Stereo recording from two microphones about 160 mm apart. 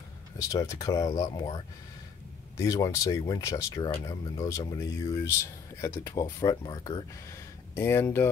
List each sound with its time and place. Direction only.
0.4 s speech: 20° left (ahead or behind)
7.7 s speech: 15° left (ahead or behind)